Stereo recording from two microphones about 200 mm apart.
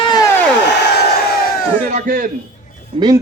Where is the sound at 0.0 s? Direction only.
20° left (ahead or behind).